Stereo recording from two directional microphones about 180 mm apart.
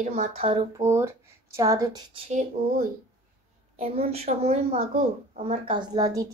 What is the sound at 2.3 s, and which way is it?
Speech, 45° right (ahead or behind).